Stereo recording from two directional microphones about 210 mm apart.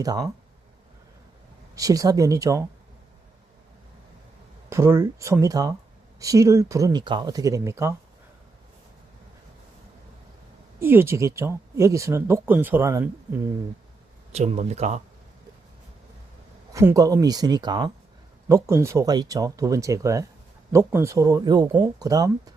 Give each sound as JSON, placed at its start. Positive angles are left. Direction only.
{"t": 0.0, "sound": "speech", "side_deg": -15}
{"t": 1.7, "sound": "speech", "side_deg": -15}
{"t": 4.7, "sound": "speech", "side_deg": -10}
{"t": 10.8, "sound": "speech", "side_deg": -10}
{"t": 14.3, "sound": "speech", "side_deg": -30}
{"t": 16.7, "sound": "speech", "side_deg": -15}